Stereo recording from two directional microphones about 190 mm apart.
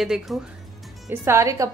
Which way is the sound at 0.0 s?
Centre (ahead or behind).